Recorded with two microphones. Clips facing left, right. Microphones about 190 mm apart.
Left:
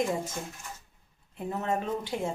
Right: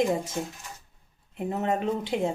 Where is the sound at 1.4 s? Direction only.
20° right (ahead or behind).